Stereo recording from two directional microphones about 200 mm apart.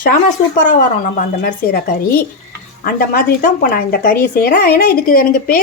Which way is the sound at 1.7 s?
50° left (ahead or behind).